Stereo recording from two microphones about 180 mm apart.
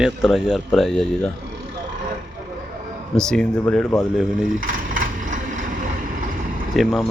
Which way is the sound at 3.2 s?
5° left (ahead or behind).